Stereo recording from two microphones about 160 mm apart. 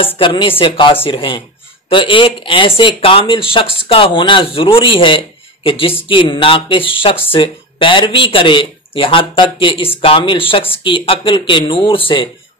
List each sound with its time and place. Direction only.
0.2 s speech: 30° left (ahead or behind)